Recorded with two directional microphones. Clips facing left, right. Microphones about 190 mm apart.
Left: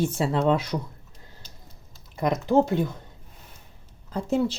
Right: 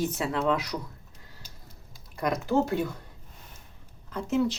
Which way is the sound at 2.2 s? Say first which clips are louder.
Left 4 dB; 20° left (ahead or behind).